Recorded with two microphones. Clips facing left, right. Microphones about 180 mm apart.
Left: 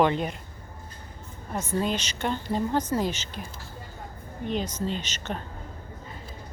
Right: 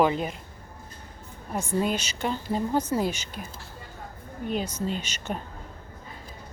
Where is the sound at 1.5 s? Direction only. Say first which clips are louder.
Right 1 dB; 10° right (ahead or behind).